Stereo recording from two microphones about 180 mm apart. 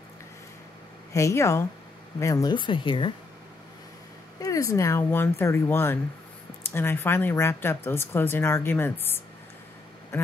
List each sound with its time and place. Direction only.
1.1 s speech: 15° left (ahead or behind)
4.4 s speech: 20° left (ahead or behind)